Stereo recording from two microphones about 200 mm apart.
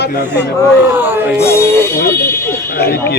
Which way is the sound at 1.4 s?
10° left (ahead or behind).